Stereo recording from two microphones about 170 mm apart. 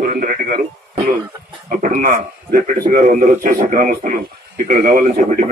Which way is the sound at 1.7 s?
50° right (ahead or behind).